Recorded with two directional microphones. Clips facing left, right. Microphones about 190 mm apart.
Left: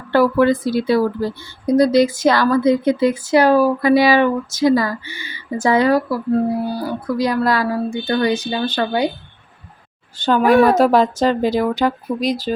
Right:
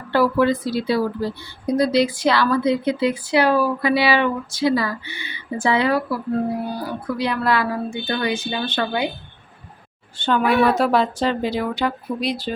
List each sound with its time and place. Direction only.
0.1 s speech: 50° left (ahead or behind)
10.2 s speech: 40° left (ahead or behind)